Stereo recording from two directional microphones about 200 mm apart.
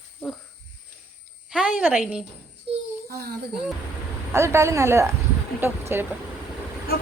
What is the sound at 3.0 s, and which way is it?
Speech, 50° right (ahead or behind).